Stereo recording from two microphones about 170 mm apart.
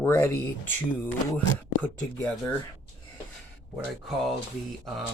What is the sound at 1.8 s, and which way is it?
Speech, 5° left (ahead or behind).